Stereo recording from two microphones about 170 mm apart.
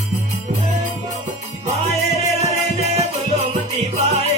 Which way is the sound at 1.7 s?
40° right (ahead or behind).